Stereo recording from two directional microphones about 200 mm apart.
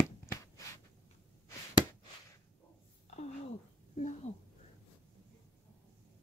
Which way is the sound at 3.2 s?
35° left (ahead or behind).